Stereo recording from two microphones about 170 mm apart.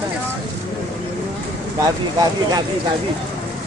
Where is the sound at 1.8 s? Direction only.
20° right (ahead or behind).